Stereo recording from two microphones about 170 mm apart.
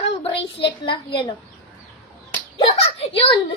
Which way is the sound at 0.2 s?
30° left (ahead or behind).